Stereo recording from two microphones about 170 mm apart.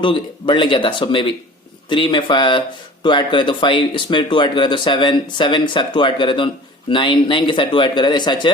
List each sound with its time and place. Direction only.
0.0 s speech: 30° left (ahead or behind)